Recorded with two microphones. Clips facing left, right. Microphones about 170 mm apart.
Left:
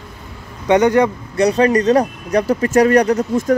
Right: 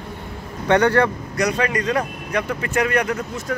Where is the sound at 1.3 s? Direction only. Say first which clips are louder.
Left 9 dB; 35° left (ahead or behind).